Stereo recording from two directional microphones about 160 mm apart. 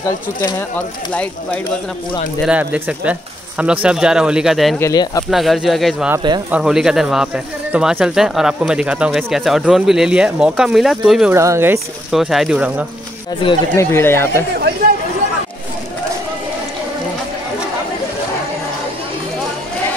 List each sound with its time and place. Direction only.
0.0 s speech: 15° left (ahead or behind)
2.4 s speech: 5° right (ahead or behind)
4.7 s speech: 20° left (ahead or behind)
5.3 s speech: centre (ahead or behind)
11.3 s speech: 15° right (ahead or behind)
12.1 s speech: centre (ahead or behind)
13.7 s speech: 15° left (ahead or behind)